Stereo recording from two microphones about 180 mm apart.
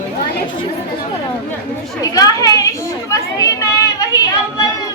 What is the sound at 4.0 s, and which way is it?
Speech, 20° left (ahead or behind).